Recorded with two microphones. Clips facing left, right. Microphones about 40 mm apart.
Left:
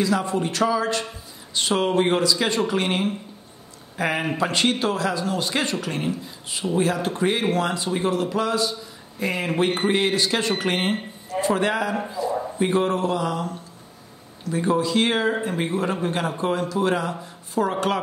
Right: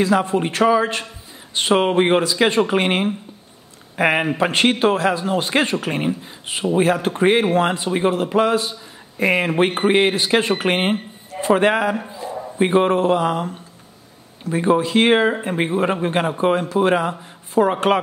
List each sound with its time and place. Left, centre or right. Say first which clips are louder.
0.0 s a man's voice: right 5 dB; right